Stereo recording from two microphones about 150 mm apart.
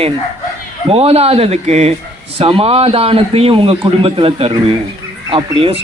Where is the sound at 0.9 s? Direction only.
40° right (ahead or behind).